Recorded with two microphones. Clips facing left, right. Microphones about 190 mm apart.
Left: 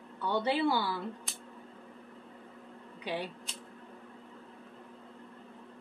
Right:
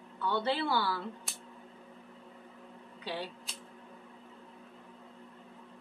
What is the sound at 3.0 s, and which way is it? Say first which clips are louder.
Speech: left 2 dB; 15° left (ahead or behind).